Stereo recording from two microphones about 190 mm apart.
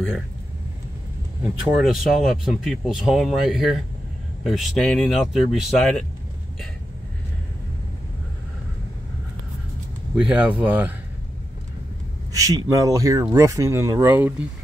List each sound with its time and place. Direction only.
1.4 s speech: 5° right (ahead or behind)
10.1 s speech: 5° right (ahead or behind)
12.3 s speech: 20° right (ahead or behind)